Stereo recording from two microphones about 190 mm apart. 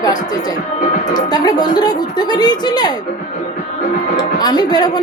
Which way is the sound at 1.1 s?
20° left (ahead or behind).